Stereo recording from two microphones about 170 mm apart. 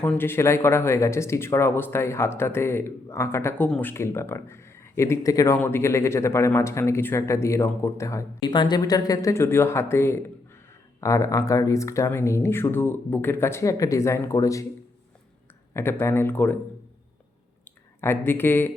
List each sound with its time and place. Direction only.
0.0 s speech: 10° left (ahead or behind)
15.7 s speech: 15° left (ahead or behind)
17.7 s speech: 15° left (ahead or behind)